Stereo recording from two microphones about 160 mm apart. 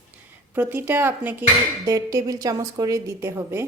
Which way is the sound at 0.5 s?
15° right (ahead or behind).